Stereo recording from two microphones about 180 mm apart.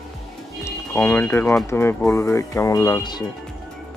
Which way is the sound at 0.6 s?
15° left (ahead or behind).